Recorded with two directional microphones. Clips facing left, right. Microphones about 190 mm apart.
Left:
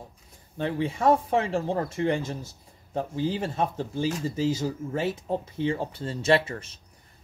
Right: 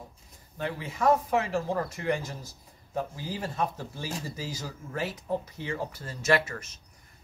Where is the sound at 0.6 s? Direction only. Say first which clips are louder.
Left 5 dB; 30° left (ahead or behind).